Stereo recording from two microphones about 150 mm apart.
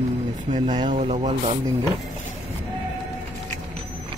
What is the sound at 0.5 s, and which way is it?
Speech, 30° right (ahead or behind).